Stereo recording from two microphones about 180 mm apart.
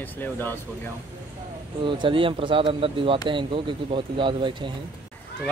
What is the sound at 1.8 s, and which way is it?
Speech, 30° right (ahead or behind).